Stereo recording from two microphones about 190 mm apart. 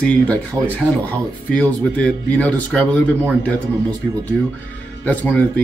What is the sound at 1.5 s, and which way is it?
Speech, 5° left (ahead or behind).